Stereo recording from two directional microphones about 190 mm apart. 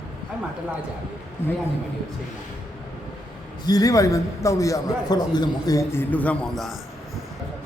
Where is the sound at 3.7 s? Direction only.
20° left (ahead or behind); by 6.7 s 5° left (ahead or behind).